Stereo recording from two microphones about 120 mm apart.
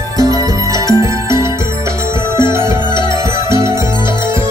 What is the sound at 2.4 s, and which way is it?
Music, 20° right (ahead or behind).